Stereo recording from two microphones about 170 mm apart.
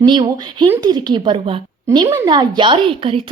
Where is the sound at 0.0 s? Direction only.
25° right (ahead or behind).